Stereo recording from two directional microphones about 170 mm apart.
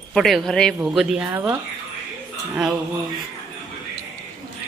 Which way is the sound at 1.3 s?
15° right (ahead or behind).